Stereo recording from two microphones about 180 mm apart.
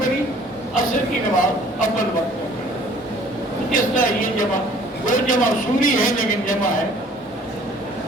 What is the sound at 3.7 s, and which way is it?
A man's voice, 50° left (ahead or behind).